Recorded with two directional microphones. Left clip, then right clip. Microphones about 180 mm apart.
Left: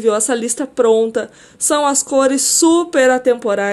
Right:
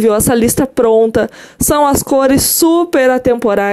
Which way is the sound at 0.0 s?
45° right (ahead or behind).